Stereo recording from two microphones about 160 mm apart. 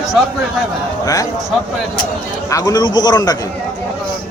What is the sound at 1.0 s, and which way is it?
Speech, 20° left (ahead or behind).